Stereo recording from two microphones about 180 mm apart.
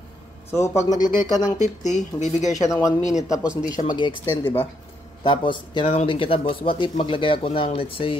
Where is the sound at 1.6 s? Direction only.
40° left (ahead or behind).